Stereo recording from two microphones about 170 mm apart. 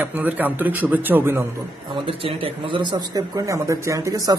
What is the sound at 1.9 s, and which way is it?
A man's voice, 30° right (ahead or behind).